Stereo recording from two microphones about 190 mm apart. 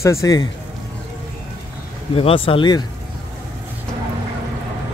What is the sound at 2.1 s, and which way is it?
Speech, 30° left (ahead or behind).